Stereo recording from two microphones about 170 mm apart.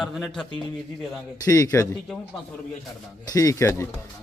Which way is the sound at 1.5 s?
20° left (ahead or behind).